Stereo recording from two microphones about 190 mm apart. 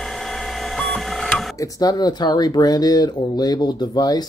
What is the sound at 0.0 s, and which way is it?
Printer, centre (ahead or behind).